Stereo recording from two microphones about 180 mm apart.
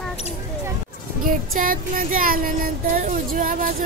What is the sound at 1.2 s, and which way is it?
Music, 50° right (ahead or behind).